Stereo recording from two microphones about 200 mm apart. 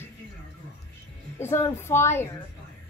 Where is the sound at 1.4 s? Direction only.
10° left (ahead or behind).